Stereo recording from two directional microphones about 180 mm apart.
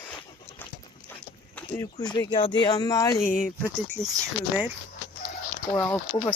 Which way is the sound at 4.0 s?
5° left (ahead or behind).